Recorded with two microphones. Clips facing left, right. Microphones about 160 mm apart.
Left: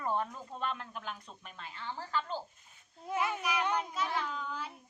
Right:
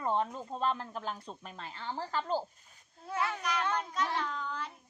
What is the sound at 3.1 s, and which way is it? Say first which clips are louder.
Cat: left 1 dB; 15° left (ahead or behind).